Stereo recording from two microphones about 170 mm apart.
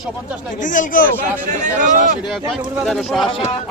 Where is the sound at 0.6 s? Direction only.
50° left (ahead or behind).